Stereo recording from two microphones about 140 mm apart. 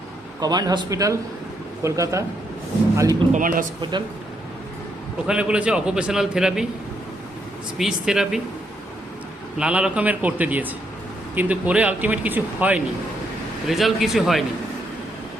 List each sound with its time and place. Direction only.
0.3 s speech: 30° right (ahead or behind)
3.3 s speech: 75° right (ahead or behind)
5.2 s a man's voice: 5° right (ahead or behind)
7.8 s a man's voice: 5° right (ahead or behind)
9.6 s speech: 5° right (ahead or behind)
13.7 s a man's voice: centre (ahead or behind)